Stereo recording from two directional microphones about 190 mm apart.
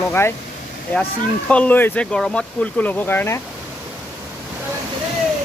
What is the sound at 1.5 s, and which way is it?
Speech, 10° left (ahead or behind).